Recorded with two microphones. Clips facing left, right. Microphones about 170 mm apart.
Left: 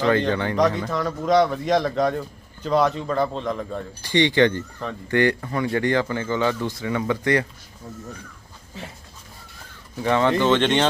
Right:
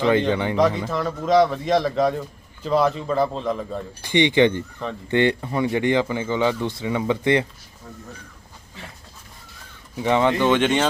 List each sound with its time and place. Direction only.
0.0 s speech: 15° right (ahead or behind)
0.5 s speech: centre (ahead or behind)
4.0 s speech: 20° right (ahead or behind)
10.0 s speech: 15° right (ahead or behind)